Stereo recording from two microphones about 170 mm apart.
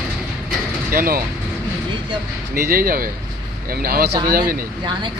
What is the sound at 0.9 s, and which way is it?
Speech, 55° right (ahead or behind).